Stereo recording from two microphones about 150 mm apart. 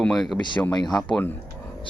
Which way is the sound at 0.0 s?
Centre (ahead or behind).